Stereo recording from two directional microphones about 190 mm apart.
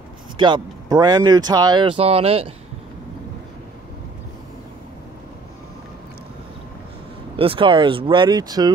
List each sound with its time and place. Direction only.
0.4 s speech: 25° right (ahead or behind)
7.3 s speech: 30° right (ahead or behind)